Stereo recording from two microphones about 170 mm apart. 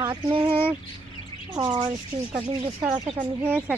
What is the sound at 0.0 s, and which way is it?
Speech, 25° right (ahead or behind).